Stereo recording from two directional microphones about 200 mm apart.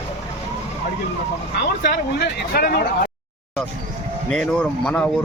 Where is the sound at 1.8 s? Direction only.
55° left (ahead or behind).